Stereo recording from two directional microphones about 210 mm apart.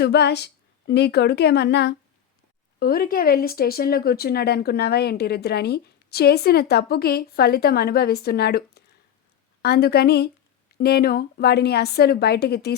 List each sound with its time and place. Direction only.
0.0 s speech: 50° left (ahead or behind)